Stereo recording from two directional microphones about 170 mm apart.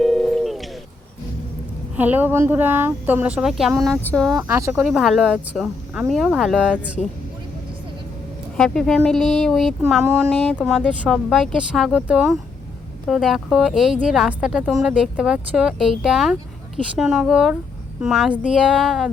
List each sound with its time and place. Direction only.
0.0 s a sound: centre (ahead or behind)
2.0 s speech: 10° right (ahead or behind)
4.4 s speech: 15° right (ahead or behind)
4.8 s speech: centre (ahead or behind)
8.5 s speech: 5° left (ahead or behind)